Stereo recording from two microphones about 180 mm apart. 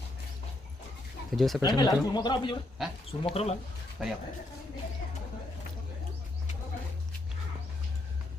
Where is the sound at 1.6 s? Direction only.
25° left (ahead or behind).